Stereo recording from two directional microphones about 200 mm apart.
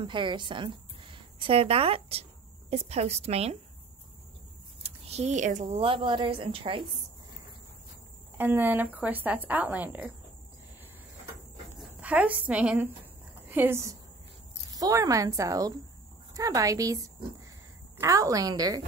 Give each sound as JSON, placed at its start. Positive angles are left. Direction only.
{"t": 0.0, "sound": "a woman's voice", "side_deg": -25}
{"t": 4.8, "sound": "a woman's voice", "side_deg": -30}
{"t": 8.4, "sound": "speech", "side_deg": -10}
{"t": 12.0, "sound": "speech", "side_deg": -5}